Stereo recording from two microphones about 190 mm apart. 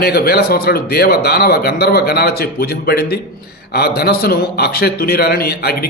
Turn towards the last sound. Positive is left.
turn(degrees=55)  # may be behind; listen again after turning